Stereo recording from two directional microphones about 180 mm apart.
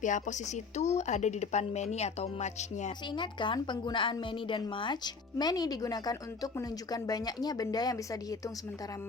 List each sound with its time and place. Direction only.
0.0 s speech: 45° left (ahead or behind)
3.1 s a woman's voice: 25° left (ahead or behind)